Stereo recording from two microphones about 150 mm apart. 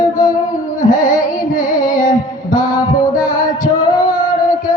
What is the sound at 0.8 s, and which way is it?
Music, 60° left (ahead or behind).